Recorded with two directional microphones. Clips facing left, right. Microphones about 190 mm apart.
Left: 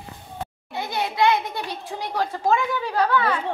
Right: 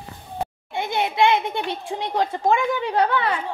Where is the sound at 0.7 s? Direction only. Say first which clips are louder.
Right 3 dB; 20° right (ahead or behind).